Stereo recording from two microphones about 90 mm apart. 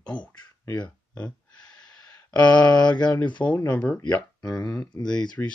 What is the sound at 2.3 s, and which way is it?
Speech, 15° left (ahead or behind).